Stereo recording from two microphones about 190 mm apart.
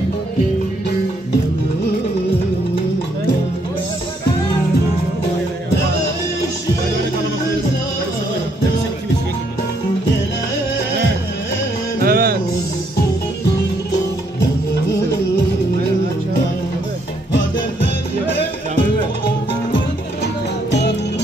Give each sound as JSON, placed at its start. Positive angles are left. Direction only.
{"t": 12.0, "sound": "music", "side_deg": -50}
{"t": 18.4, "sound": "music", "side_deg": 50}